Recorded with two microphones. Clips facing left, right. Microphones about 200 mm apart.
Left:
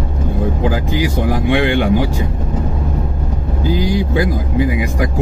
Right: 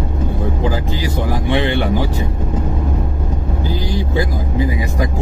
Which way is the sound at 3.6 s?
15° left (ahead or behind).